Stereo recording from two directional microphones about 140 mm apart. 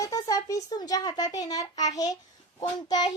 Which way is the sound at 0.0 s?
25° left (ahead or behind).